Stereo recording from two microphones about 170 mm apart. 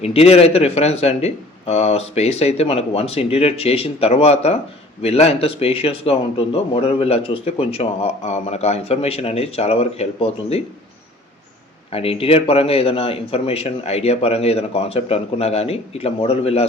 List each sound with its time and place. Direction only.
0.0 s speech: 35° left (ahead or behind)
11.9 s speech: 35° left (ahead or behind)